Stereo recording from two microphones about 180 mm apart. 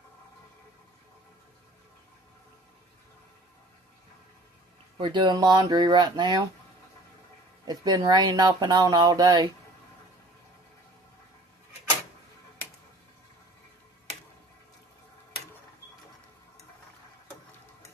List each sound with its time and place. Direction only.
4.9 s speech: 25° right (ahead or behind)
7.6 s speech: 20° right (ahead or behind)